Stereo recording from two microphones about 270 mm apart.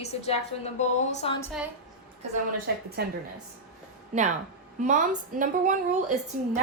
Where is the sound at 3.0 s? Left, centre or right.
Right.